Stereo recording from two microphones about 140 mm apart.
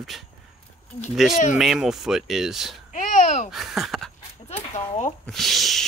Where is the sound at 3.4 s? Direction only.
Centre (ahead or behind).